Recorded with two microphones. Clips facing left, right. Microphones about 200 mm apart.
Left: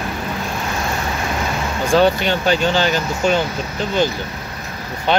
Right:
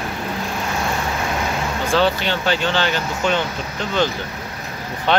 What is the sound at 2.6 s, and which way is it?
Speech, 40° left (ahead or behind).